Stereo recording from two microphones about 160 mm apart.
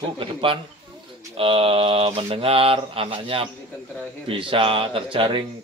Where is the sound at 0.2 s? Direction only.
35° right (ahead or behind).